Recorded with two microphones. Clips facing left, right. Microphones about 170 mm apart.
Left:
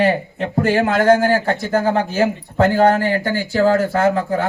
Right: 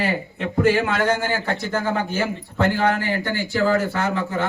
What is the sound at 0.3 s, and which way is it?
A man's voice, 40° left (ahead or behind).